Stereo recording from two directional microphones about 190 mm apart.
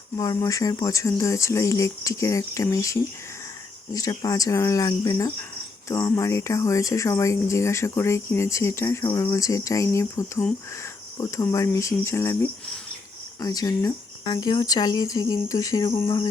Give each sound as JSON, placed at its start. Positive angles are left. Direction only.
{"t": 0.2, "sound": "speech", "side_deg": 20}
{"t": 13.4, "sound": "speech", "side_deg": 20}